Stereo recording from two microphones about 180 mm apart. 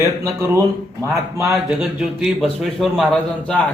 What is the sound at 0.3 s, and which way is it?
A man's voice, 15° right (ahead or behind).